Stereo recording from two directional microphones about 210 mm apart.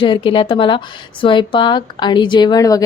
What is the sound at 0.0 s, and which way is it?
Speech, 25° left (ahead or behind).